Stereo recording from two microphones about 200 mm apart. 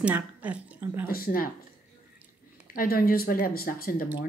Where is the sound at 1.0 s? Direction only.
45° left (ahead or behind).